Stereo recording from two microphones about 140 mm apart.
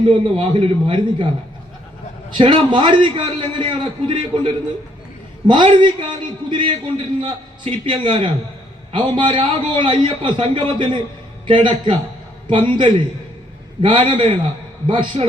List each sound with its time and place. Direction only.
0.1 s a man's voice: 35° right (ahead or behind)
2.3 s a man's voice: 35° right (ahead or behind)